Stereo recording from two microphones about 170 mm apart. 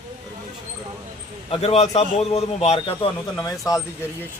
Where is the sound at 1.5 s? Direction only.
35° left (ahead or behind).